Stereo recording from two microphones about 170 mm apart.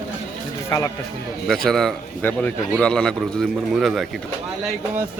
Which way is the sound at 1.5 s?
Centre (ahead or behind).